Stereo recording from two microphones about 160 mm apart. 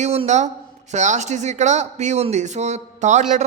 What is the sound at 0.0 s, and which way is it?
Speech, 45° right (ahead or behind).